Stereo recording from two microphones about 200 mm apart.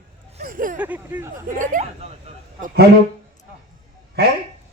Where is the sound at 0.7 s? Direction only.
10° right (ahead or behind).